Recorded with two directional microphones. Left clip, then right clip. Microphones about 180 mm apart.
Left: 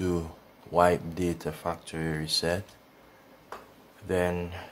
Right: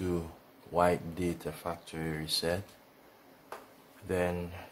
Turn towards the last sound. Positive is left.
turn(degrees=15)  # may be behind; listen again after turning